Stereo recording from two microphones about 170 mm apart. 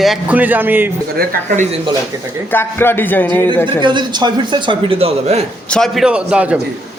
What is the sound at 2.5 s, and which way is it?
Speech, 15° left (ahead or behind).